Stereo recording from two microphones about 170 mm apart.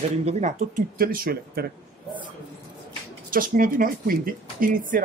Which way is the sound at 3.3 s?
55° right (ahead or behind).